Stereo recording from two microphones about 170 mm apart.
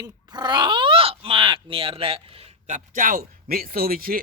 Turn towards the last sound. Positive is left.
turn(degrees=-60)  # may be behind; listen again after turning